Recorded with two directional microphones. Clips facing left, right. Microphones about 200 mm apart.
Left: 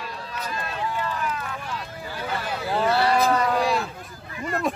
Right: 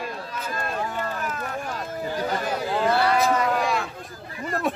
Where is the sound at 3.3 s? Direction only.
35° left (ahead or behind).